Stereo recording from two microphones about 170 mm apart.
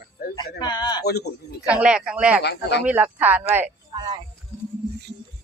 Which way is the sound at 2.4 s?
80° left.